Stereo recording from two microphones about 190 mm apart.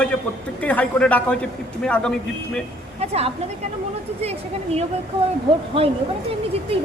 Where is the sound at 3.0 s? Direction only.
35° right (ahead or behind).